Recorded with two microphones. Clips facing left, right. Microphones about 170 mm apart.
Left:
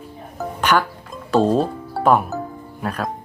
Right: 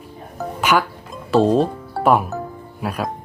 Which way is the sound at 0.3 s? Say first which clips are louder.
Even; 10° right (ahead or behind).